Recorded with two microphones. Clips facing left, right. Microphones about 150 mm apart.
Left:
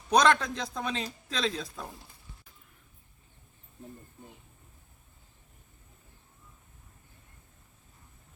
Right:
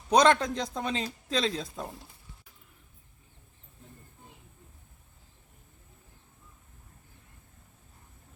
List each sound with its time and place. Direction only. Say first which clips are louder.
0.2 s a man's voice: right 2 dB; 25° right (ahead or behind)